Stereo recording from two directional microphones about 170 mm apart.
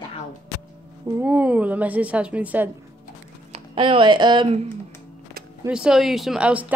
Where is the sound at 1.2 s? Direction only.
10° right (ahead or behind).